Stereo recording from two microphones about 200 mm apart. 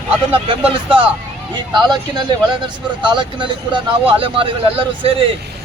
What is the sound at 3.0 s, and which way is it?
Speech, 25° right (ahead or behind).